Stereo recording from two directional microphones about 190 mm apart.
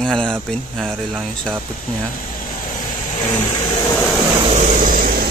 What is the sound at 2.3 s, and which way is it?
Vehicle, 45° left (ahead or behind).